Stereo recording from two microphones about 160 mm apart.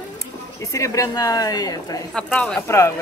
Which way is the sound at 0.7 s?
20° left (ahead or behind).